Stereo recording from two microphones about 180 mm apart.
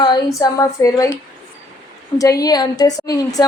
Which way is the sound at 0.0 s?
20° left (ahead or behind).